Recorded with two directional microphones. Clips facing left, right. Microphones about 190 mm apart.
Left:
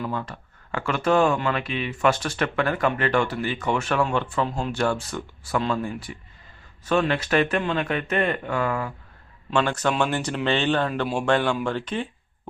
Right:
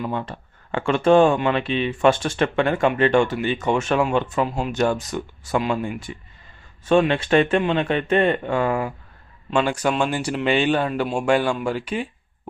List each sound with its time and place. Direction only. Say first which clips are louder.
0.0 s speech: right 3 dB; 20° right (ahead or behind)
4.4 s speech: right 2 dB; 5° right (ahead or behind)
4.7 s speech: right 3 dB; 20° right (ahead or behind)
5.8 s speech: right 2 dB; 25° right (ahead or behind)
9.6 s speech: right 2 dB; 10° right (ahead or behind)